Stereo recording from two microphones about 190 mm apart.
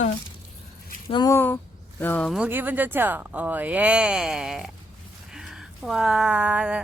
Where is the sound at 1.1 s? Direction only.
20° left (ahead or behind).